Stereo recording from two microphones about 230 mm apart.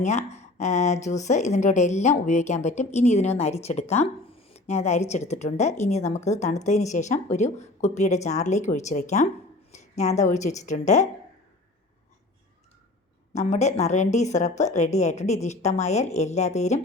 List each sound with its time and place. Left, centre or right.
0.0 s speech: left
13.3 s speech: left